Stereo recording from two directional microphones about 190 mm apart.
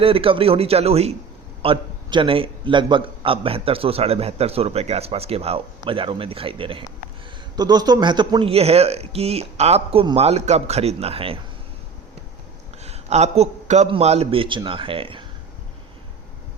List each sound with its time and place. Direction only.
0.0 s a man's voice: 30° right (ahead or behind)
12.8 s a man's voice: 35° right (ahead or behind)